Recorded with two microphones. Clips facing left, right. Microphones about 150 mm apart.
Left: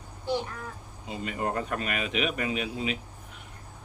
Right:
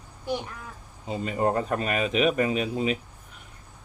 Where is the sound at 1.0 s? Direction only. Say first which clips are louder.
Right 6 dB; 35° right (ahead or behind).